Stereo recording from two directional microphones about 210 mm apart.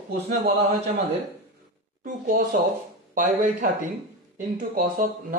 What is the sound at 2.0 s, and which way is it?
Speech, 40° right (ahead or behind).